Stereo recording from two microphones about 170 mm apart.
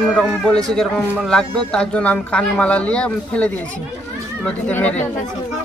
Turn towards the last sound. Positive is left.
turn(degrees=10)  # may be behind; listen again after turning